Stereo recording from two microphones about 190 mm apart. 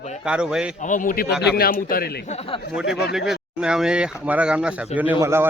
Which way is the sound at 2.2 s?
30° left (ahead or behind).